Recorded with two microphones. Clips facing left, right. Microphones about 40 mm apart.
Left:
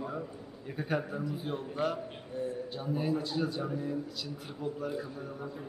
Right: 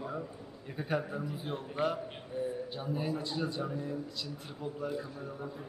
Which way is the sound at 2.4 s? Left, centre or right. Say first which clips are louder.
Even; centre.